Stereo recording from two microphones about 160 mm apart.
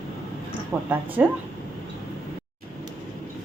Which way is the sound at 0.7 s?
15° right (ahead or behind).